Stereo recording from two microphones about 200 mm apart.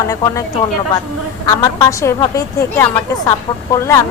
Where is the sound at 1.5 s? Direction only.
15° left (ahead or behind).